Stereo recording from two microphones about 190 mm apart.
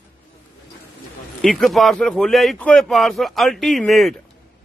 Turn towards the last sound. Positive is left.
turn(degrees=0)  # may be behind; listen again after turning